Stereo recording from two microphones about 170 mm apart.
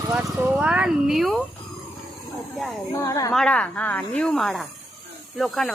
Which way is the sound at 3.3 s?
5° left (ahead or behind).